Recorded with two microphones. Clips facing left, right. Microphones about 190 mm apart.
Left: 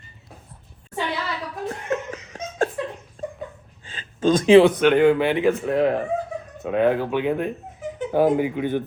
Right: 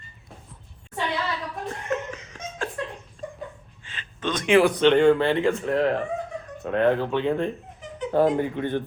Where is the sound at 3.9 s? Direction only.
30° left (ahead or behind).